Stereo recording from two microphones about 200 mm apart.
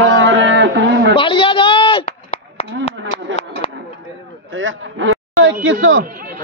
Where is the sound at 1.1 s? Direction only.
25° left (ahead or behind).